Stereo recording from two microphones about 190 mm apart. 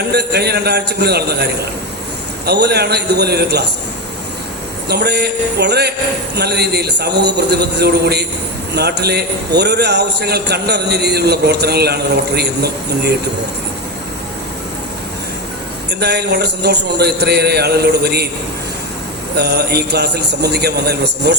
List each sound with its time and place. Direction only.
0.1 s a man's voice: 60° right (ahead or behind)
2.5 s a man's voice: 60° right (ahead or behind)
4.9 s a man's voice: 60° right (ahead or behind)
15.9 s a man's voice: 60° right (ahead or behind)
19.4 s a man's voice: 60° right (ahead or behind)